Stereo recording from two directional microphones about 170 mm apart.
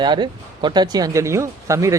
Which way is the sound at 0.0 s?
25° right (ahead or behind).